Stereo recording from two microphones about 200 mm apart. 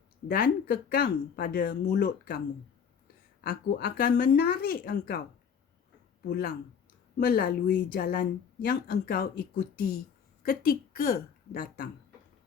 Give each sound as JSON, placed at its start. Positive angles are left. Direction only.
{"t": 0.3, "sound": "speech", "side_deg": 50}
{"t": 3.5, "sound": "speech", "side_deg": 50}
{"t": 6.2, "sound": "a woman's voice", "side_deg": 50}